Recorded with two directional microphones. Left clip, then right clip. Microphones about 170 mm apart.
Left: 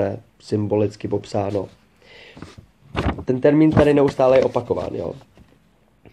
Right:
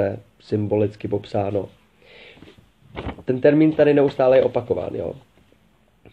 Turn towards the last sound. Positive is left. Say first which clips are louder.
# even
turn(degrees=15)  # may be behind; listen again after turning